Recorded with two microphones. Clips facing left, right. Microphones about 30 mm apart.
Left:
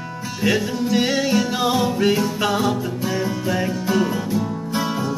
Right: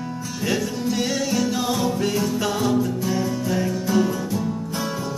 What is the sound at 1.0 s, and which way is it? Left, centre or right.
Music, left.